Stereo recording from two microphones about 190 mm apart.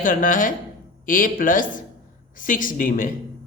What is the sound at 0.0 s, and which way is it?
Speech, 45° left (ahead or behind).